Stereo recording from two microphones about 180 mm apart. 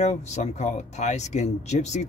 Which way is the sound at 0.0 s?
40° left (ahead or behind).